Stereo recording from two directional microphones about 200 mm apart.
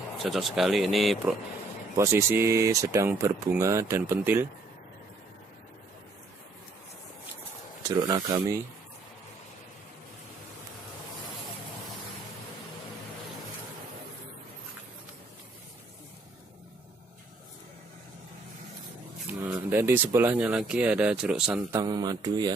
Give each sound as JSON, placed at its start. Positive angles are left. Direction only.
{"t": 0.2, "sound": "speech", "side_deg": 0}
{"t": 2.0, "sound": "speech", "side_deg": -15}
{"t": 7.9, "sound": "speech", "side_deg": -15}
{"t": 19.4, "sound": "speech", "side_deg": -10}
{"t": 21.7, "sound": "speech", "side_deg": -20}